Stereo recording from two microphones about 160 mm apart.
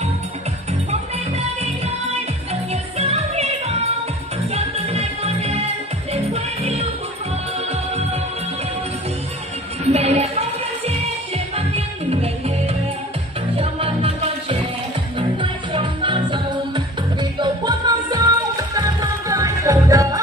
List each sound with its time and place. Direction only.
2.7 s music: 40° right (ahead or behind)
9.8 s music: 40° right (ahead or behind)
11.3 s music: 40° right (ahead or behind); by 20.2 s 20° right (ahead or behind)